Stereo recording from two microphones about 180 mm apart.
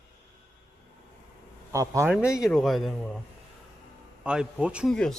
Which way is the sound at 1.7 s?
15° right (ahead or behind).